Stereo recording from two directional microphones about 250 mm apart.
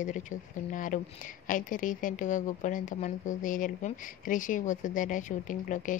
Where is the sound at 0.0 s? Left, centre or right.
Left.